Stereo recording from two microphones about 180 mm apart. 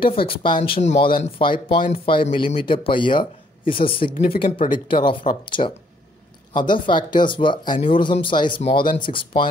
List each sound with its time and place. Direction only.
0.0 s speech: 30° left (ahead or behind)
4.1 s speech: 45° left (ahead or behind)
4.4 s speech: 30° left (ahead or behind)